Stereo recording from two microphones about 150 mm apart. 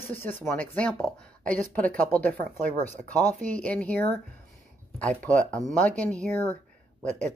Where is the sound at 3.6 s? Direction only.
10° left (ahead or behind).